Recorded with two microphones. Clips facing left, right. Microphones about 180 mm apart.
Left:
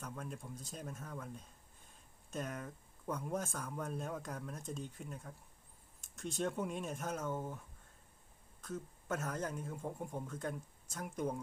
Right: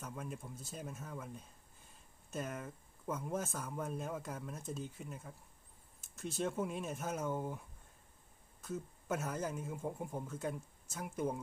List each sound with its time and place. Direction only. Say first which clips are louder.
0.0 s speech: right 1 dB; 5° right (ahead or behind)
8.6 s speech: right 2 dB; 10° right (ahead or behind)